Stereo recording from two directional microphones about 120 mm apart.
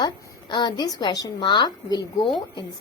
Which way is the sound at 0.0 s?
40° left (ahead or behind).